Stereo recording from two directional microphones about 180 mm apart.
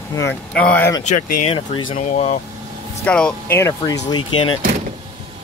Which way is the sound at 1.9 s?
40° left (ahead or behind).